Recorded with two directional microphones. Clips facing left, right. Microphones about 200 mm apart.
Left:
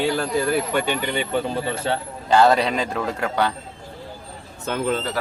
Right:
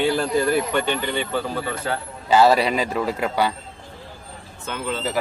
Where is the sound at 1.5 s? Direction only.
25° left (ahead or behind).